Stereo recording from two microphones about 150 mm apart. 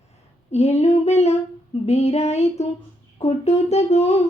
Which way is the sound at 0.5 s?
45° left (ahead or behind).